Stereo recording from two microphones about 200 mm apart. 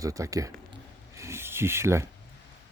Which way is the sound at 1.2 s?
15° right (ahead or behind).